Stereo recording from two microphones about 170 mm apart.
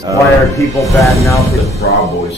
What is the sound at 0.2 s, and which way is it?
Speech, 20° left (ahead or behind).